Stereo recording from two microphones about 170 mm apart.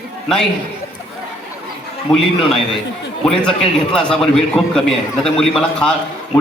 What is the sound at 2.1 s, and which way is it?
Speech, 25° left (ahead or behind).